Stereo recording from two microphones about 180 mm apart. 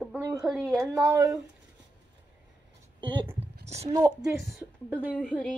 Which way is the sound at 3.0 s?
25° right (ahead or behind).